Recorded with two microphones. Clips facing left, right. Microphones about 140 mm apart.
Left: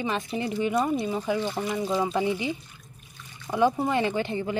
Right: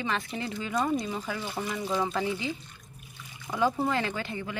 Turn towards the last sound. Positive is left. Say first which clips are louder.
# left 7 dB
turn(degrees=25)  # may be behind; listen again after turning